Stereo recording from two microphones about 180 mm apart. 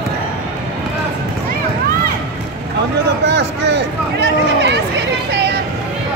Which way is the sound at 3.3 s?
75° right (ahead or behind).